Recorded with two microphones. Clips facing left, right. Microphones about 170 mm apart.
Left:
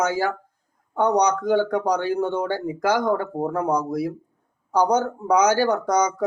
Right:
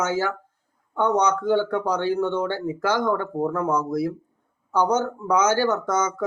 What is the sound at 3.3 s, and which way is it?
Speech, 35° left (ahead or behind).